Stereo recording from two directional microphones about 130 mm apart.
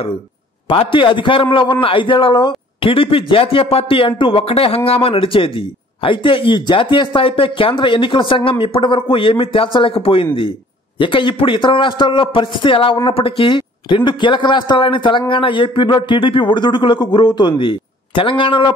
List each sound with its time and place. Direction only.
0.7 s a man's voice: 40° left (ahead or behind)